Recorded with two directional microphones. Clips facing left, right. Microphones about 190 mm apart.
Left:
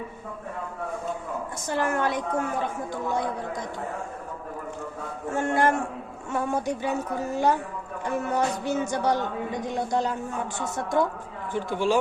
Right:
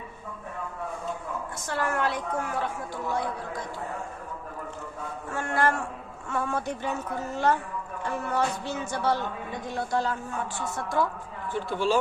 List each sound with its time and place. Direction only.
1.6 s a woman's voice: 20° left (ahead or behind)
5.3 s a woman's voice: 20° left (ahead or behind)